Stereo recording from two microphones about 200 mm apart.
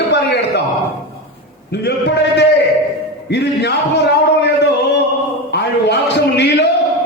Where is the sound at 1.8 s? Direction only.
55° left (ahead or behind).